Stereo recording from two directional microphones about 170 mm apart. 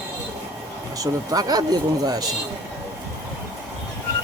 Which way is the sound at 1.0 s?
20° right (ahead or behind).